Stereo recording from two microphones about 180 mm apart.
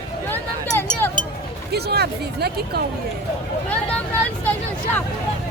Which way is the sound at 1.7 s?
65° right (ahead or behind).